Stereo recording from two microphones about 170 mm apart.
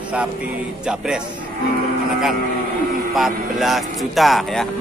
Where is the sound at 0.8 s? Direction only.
5° right (ahead or behind).